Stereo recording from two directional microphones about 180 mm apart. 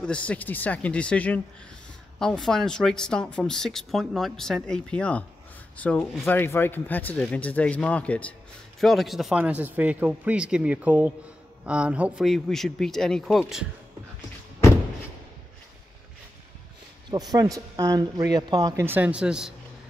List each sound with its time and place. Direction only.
0.0 s speech: 5° left (ahead or behind)
17.1 s speech: 20° right (ahead or behind); by 19.5 s 5° right (ahead or behind)